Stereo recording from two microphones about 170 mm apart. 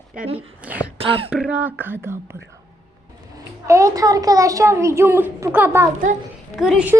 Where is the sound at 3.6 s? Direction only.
20° right (ahead or behind).